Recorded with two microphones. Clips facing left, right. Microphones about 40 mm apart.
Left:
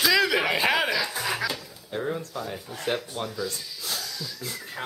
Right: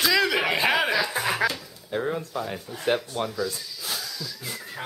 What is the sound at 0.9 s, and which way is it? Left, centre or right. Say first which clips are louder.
Speech: right 3 dB; centre.